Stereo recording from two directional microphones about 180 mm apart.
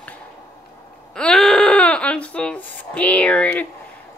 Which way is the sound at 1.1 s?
5° left (ahead or behind).